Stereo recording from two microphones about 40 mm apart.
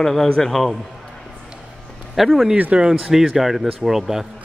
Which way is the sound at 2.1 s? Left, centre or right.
Centre.